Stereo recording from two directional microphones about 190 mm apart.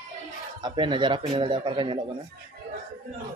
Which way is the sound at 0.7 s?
25° right (ahead or behind).